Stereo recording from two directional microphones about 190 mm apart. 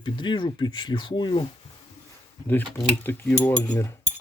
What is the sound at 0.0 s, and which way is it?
Speech, 25° left (ahead or behind).